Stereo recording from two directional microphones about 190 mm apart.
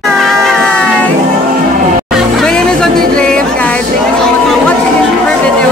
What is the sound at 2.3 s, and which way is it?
Music, 5° left (ahead or behind).